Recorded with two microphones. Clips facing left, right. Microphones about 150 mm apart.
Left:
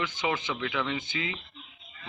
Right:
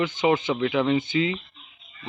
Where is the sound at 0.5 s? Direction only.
35° right (ahead or behind).